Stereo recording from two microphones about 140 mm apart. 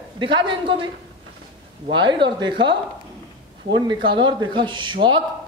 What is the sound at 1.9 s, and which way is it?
Speech, 35° right (ahead or behind).